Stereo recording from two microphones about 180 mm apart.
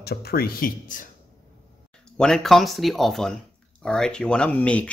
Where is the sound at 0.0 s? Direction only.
60° left (ahead or behind).